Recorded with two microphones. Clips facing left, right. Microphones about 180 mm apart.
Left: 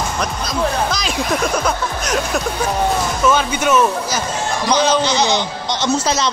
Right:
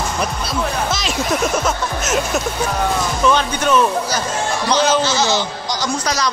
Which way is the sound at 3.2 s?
5° left (ahead or behind).